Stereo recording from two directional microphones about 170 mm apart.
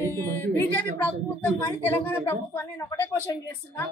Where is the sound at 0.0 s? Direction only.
15° left (ahead or behind).